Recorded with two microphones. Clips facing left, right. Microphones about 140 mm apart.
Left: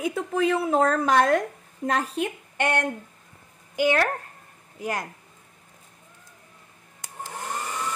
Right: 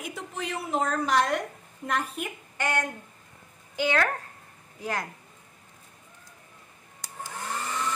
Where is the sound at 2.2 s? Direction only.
25° left (ahead or behind).